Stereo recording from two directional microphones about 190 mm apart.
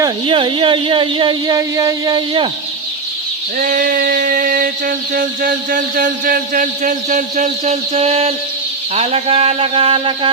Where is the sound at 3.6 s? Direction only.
45° right (ahead or behind).